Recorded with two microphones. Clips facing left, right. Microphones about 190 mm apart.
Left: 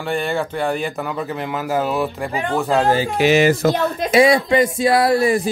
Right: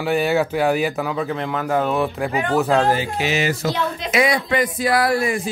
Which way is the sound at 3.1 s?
55° left (ahead or behind).